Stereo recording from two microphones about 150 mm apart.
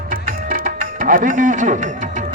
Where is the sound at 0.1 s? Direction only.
70° right (ahead or behind).